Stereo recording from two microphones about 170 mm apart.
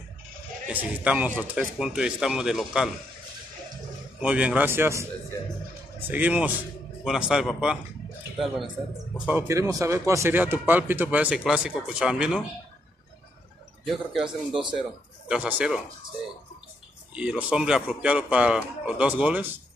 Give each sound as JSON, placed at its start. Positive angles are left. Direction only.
{"t": 0.7, "sound": "speech", "side_deg": -10}
{"t": 4.2, "sound": "speech", "side_deg": -5}
{"t": 13.8, "sound": "speech", "side_deg": 0}
{"t": 17.1, "sound": "speech", "side_deg": -5}